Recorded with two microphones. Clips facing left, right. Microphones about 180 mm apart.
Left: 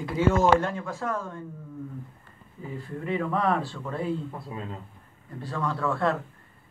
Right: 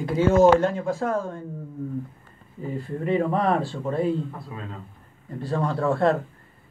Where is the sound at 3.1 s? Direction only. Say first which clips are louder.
Right 4 dB; 35° right (ahead or behind).